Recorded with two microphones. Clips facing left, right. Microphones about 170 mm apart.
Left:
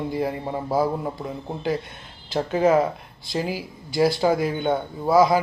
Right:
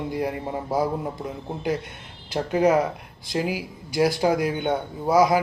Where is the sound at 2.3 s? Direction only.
10° right (ahead or behind).